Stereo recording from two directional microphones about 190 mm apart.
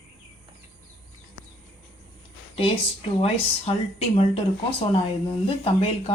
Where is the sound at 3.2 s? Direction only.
30° left (ahead or behind).